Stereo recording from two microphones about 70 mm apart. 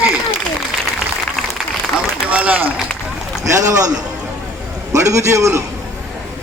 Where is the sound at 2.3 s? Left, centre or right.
Right.